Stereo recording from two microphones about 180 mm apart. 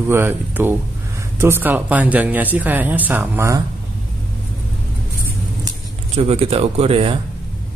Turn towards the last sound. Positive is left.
turn(degrees=-30)  # may be behind; listen again after turning